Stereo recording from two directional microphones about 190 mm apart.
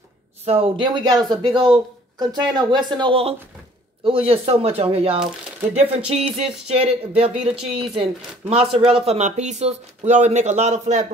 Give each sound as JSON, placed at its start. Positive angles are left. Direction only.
{"t": 0.5, "sound": "speech", "side_deg": -25}